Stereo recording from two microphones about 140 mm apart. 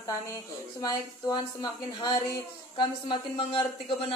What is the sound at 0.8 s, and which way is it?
A woman's voice, 30° left (ahead or behind).